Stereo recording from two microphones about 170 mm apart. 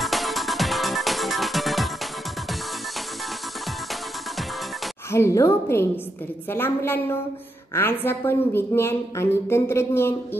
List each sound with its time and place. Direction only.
0.0 s music: centre (ahead or behind)
5.1 s a woman's voice: 15° left (ahead or behind)